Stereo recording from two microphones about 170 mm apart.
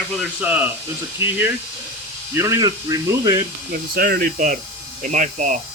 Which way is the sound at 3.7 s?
60° right (ahead or behind).